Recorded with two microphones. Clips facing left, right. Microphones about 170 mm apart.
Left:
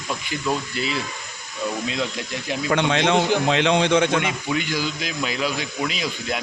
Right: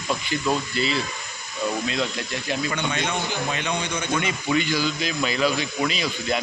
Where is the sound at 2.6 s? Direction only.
90° left.